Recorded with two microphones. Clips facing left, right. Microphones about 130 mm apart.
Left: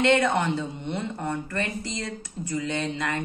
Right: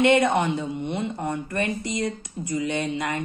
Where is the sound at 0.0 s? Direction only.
15° right (ahead or behind).